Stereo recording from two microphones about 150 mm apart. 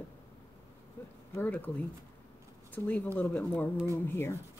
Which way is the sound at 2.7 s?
10° left (ahead or behind).